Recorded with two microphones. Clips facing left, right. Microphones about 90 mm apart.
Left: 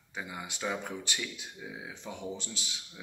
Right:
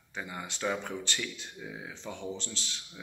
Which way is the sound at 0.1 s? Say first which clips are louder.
Right 1 dB; 10° left (ahead or behind).